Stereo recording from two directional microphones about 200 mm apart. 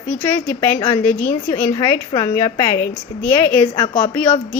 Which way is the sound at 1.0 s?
10° left (ahead or behind).